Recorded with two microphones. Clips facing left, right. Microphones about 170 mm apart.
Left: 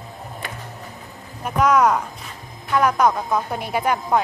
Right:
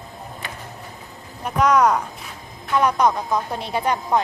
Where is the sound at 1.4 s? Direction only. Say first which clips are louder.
Even; centre (ahead or behind).